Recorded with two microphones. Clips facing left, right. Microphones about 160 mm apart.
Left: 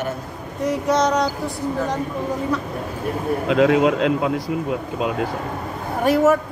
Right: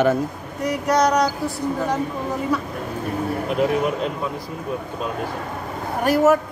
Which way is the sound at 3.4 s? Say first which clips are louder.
Left 6 dB; 90° left.